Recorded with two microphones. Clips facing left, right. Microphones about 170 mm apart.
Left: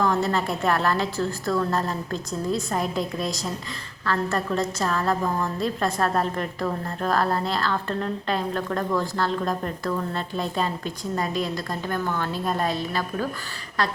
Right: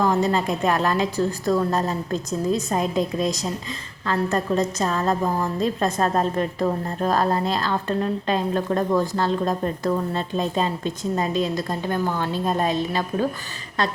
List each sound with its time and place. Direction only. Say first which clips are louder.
0.0 s a woman's voice: right 3 dB; 20° right (ahead or behind)